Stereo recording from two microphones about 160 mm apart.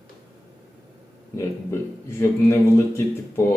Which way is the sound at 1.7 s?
15° left (ahead or behind).